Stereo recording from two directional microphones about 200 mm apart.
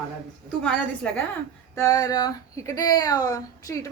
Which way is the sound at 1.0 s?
5° left (ahead or behind).